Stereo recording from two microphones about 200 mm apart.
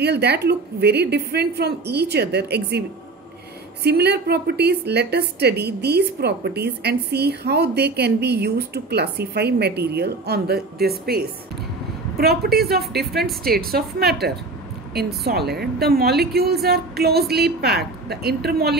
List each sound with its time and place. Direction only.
0.0 s a woman's voice: 55° right (ahead or behind)
3.8 s a woman's voice: 55° right (ahead or behind)